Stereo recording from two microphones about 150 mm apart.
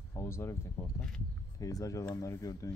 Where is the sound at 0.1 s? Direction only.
15° left (ahead or behind).